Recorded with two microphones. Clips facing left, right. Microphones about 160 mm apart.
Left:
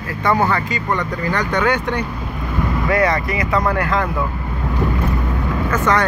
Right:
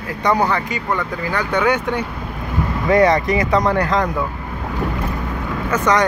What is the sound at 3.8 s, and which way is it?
Speech, 35° right (ahead or behind).